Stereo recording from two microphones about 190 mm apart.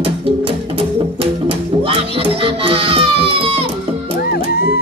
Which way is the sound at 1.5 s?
30° right (ahead or behind).